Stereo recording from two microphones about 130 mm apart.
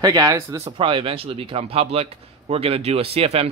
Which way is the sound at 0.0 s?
30° right (ahead or behind).